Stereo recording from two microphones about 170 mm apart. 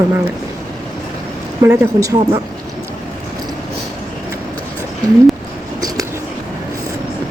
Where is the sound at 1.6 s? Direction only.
15° right (ahead or behind).